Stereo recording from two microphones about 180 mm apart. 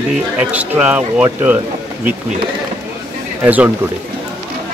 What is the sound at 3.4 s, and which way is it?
Speech, 10° right (ahead or behind).